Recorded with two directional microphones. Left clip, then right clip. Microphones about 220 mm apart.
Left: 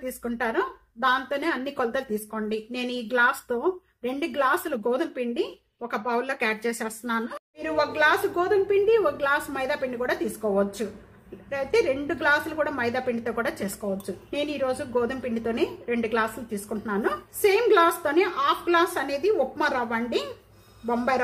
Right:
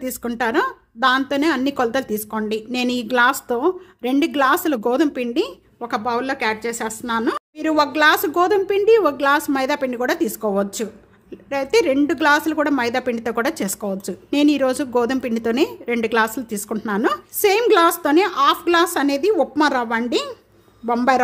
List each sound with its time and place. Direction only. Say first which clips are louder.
0.0 s a woman's voice: right 6 dB; 55° right (ahead or behind)